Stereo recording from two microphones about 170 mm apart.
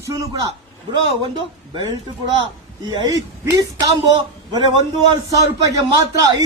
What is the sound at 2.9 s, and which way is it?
Speech, 25° right (ahead or behind).